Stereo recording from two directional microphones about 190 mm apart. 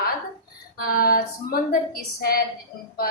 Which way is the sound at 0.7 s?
50° left (ahead or behind).